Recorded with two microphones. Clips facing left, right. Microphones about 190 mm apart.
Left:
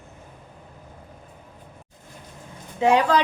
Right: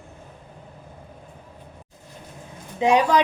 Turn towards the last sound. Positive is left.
turn(degrees=-15)  # may be behind; listen again after turning